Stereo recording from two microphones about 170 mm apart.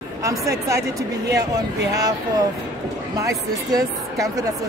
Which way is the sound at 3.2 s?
20° right (ahead or behind).